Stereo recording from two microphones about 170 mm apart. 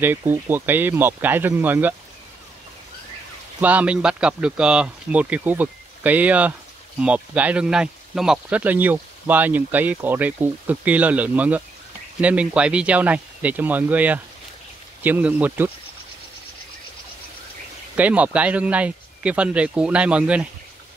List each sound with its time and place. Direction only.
0.0 s speech: 10° right (ahead or behind)
3.6 s speech: 10° right (ahead or behind)
17.9 s speech: 10° right (ahead or behind)